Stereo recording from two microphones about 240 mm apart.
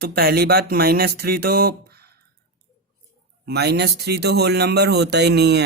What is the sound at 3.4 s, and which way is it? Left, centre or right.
Speech, right.